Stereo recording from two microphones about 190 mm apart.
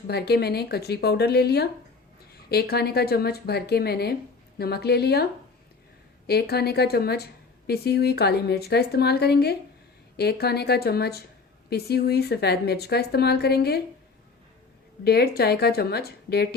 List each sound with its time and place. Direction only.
0.1 s a woman's voice: 55° left (ahead or behind)
6.2 s a woman's voice: 55° left (ahead or behind)
15.0 s a woman's voice: 55° left (ahead or behind)